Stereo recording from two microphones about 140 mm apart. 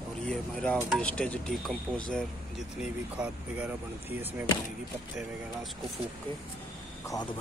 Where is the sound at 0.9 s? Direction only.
10° left (ahead or behind).